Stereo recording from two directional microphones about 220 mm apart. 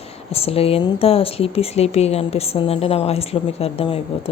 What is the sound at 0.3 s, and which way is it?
A woman's voice, 25° left (ahead or behind).